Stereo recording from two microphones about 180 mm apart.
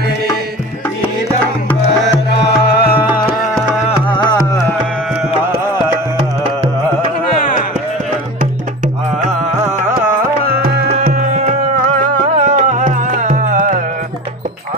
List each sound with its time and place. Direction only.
2.0 s music: 65° left (ahead or behind)
4.2 s music: 25° left (ahead or behind)
8.4 s music: 40° right (ahead or behind)